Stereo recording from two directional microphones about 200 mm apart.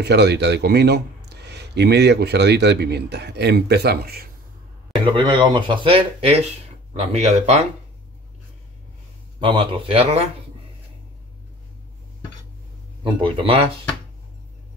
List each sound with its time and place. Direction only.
0.0 s a man's voice: 55° right (ahead or behind)
5.0 s speech: 25° right (ahead or behind)
9.4 s speech: 25° right (ahead or behind)
13.0 s speech: 25° right (ahead or behind)